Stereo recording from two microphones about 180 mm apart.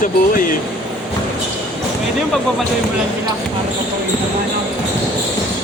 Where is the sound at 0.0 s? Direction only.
50° left (ahead or behind).